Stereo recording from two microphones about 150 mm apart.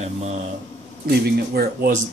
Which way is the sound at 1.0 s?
90° right.